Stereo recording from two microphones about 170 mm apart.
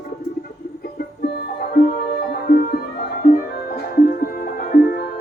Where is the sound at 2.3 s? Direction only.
60° left (ahead or behind).